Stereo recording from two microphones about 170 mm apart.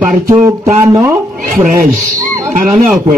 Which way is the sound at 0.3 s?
20° right (ahead or behind).